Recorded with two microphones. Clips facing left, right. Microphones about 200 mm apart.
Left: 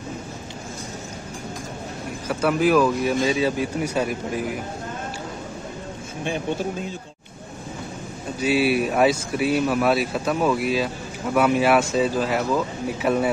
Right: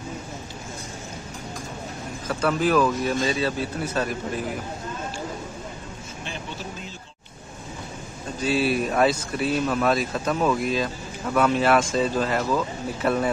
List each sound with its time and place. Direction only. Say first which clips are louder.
2.2 s speech: left 3 dB; 10° left (ahead or behind)
6.3 s speech: left 11 dB; 55° left (ahead or behind)
8.4 s speech: left 3 dB; 10° left (ahead or behind)